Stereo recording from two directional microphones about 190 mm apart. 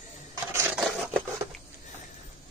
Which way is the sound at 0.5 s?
15° right (ahead or behind).